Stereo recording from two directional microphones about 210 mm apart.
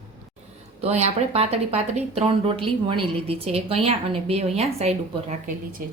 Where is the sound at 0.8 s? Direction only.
30° right (ahead or behind).